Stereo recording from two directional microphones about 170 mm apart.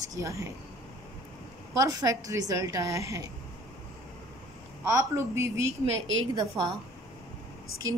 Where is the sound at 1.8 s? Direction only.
20° right (ahead or behind).